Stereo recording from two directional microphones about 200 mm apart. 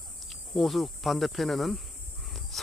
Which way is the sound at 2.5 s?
Centre (ahead or behind).